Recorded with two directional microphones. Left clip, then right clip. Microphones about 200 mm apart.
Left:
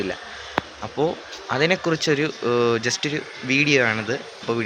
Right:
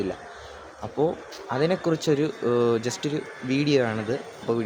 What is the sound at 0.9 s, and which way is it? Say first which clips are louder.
Speech: left 2 dB; 20° left (ahead or behind).